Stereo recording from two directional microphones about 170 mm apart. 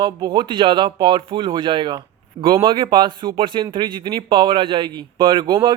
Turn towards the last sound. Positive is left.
turn(degrees=-30)  # may be behind; listen again after turning